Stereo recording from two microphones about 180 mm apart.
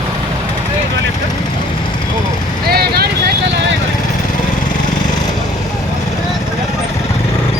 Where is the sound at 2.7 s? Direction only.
60° right (ahead or behind).